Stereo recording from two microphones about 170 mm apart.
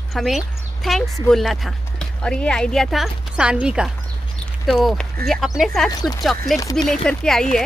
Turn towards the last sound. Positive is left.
turn(degrees=5)  # may be behind; listen again after turning